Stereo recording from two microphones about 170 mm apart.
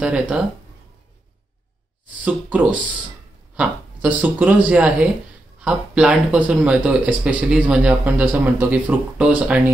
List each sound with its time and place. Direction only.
0.0 s speech: 5° right (ahead or behind)
2.2 s speech: 10° right (ahead or behind)